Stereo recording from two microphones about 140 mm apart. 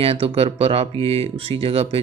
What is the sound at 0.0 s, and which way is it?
Speech, 45° right (ahead or behind).